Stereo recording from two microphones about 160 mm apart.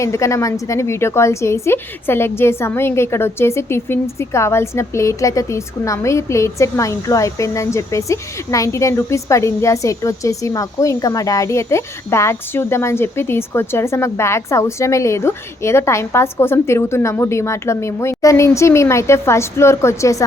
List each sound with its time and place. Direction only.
0.0 s a woman's voice: 20° left (ahead or behind)